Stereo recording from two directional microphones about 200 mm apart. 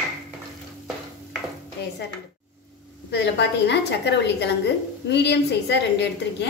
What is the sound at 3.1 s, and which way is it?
A woman's voice, 60° left (ahead or behind).